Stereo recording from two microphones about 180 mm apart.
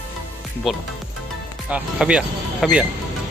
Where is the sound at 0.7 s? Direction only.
Centre (ahead or behind).